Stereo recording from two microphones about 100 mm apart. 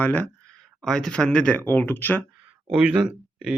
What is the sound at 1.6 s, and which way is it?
Speech, 20° left (ahead or behind).